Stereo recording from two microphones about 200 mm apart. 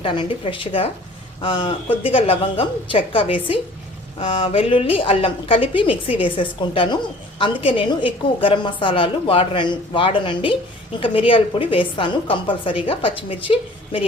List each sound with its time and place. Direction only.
0.0 s a woman's voice: 25° left (ahead or behind)